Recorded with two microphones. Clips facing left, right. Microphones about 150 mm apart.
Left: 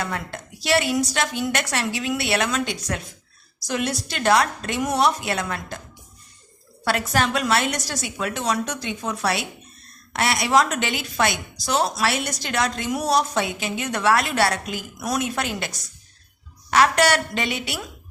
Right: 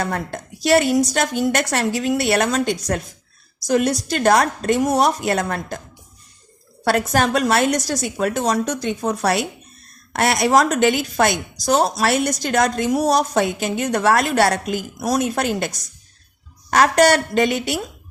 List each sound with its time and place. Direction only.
0.0 s a woman's voice: 45° right (ahead or behind)
6.8 s a woman's voice: 45° right (ahead or behind)